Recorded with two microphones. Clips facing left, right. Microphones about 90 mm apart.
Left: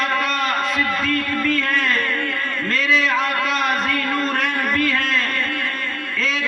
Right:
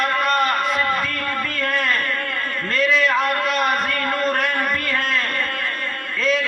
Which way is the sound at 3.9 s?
50° right (ahead or behind).